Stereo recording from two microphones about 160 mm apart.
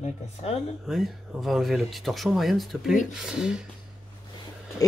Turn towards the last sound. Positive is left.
turn(degrees=20)  # may be behind; listen again after turning